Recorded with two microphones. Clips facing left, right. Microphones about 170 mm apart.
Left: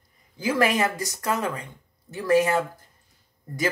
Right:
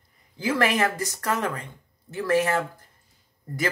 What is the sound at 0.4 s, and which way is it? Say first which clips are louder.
Speech: left 1 dB; 15° left (ahead or behind).